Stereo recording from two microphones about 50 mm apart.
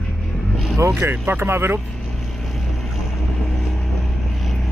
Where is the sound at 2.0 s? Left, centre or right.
Centre.